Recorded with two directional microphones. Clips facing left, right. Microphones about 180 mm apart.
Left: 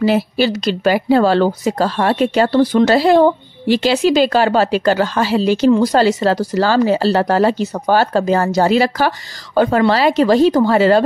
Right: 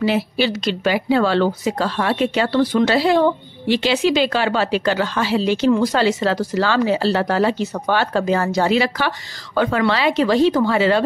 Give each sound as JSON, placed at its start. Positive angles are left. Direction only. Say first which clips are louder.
{"t": 0.0, "sound": "speech", "louder": "left 4 dB", "side_deg": 40}